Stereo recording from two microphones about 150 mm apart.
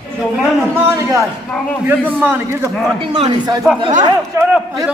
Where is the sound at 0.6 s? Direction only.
15° right (ahead or behind).